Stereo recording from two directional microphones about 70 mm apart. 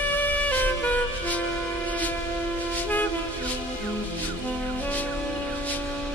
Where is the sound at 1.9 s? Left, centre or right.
Left.